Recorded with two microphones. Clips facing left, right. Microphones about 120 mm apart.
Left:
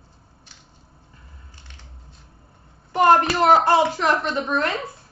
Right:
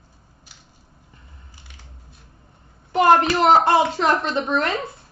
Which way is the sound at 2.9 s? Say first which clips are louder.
Right 1 dB; 25° right (ahead or behind).